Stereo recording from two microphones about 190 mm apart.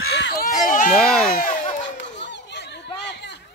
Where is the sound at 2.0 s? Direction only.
65° left (ahead or behind).